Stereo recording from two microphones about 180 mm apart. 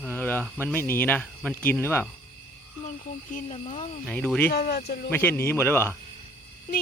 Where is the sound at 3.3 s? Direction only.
40° left (ahead or behind).